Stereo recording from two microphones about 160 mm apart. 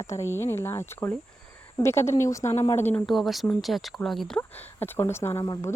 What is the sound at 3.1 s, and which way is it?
Speech, centre (ahead or behind).